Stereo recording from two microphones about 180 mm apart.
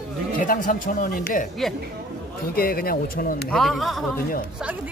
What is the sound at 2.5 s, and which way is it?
Speech, 55° left (ahead or behind).